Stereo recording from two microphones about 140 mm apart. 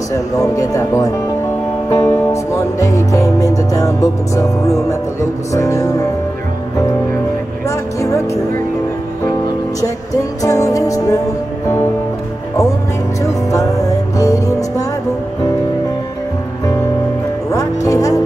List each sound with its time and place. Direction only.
0.1 s speech: 25° left (ahead or behind)
1.9 s music: 20° left (ahead or behind)
5.5 s music: 20° left (ahead or behind)
7.6 s music: 20° left (ahead or behind)
9.8 s music: 25° left (ahead or behind)
13.2 s music: 25° left (ahead or behind)
17.5 s music: 25° left (ahead or behind)